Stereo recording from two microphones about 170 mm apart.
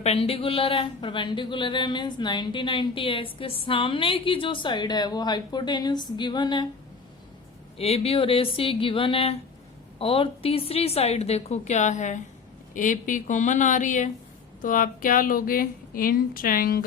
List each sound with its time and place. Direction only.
0.0 s speech: 35° left (ahead or behind)
7.8 s a woman's voice: 35° left (ahead or behind); by 16.8 s 60° left (ahead or behind)